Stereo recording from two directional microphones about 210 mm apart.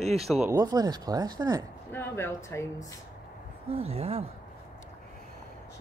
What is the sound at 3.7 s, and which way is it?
Speech, 30° right (ahead or behind).